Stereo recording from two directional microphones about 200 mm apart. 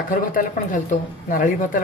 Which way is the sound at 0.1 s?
45° left (ahead or behind).